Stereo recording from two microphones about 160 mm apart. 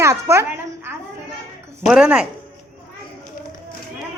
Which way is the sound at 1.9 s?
5° right (ahead or behind).